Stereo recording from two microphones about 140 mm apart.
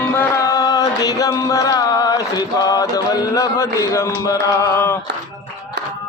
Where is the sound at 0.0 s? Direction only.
15° left (ahead or behind).